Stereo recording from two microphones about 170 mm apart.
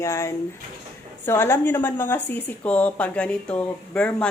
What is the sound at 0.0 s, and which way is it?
A woman's voice, 15° left (ahead or behind).